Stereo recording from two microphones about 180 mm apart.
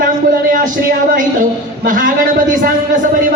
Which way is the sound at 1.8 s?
50° right (ahead or behind).